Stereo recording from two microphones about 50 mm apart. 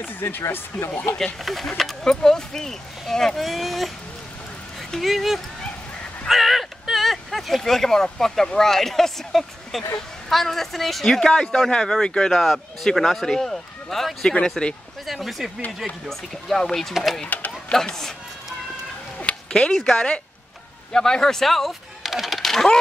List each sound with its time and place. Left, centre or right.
0.0 s speech: left
1.1 s speech: centre
5.0 s speech: centre
6.2 s a sound: centre
8.5 s speech: centre
11.1 s speech: centre
12.3 s speech: centre
14.6 s speech: centre
15.0 s speech: centre
17.8 s speech: centre
19.1 s cat: left
19.7 s speech: centre
22.0 s a sound: centre